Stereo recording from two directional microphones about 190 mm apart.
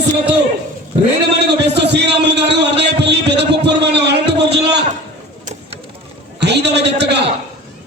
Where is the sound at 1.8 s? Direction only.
65° right (ahead or behind).